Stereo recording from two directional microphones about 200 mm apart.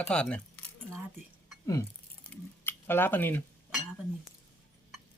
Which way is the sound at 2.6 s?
10° left (ahead or behind).